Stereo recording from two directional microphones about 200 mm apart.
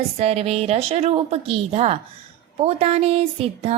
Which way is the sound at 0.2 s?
30° right (ahead or behind).